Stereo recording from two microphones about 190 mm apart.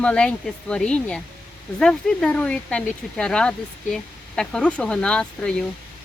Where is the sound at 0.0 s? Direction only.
5° left (ahead or behind).